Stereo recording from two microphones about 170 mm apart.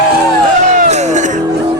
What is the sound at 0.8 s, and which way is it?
Music, 45° right (ahead or behind).